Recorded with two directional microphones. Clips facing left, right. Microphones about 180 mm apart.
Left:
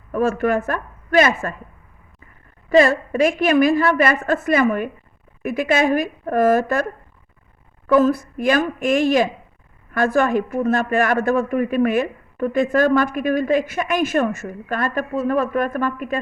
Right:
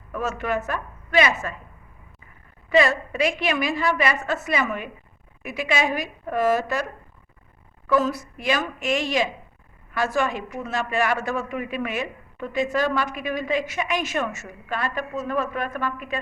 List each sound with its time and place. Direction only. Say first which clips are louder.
0.1 s a man's voice: left 8 dB; 50° left (ahead or behind)
2.6 s a man's voice: left 5 dB; 45° left (ahead or behind)
7.9 s a man's voice: left 7 dB; 50° left (ahead or behind)